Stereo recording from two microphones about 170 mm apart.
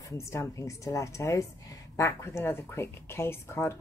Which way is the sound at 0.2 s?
15° left (ahead or behind).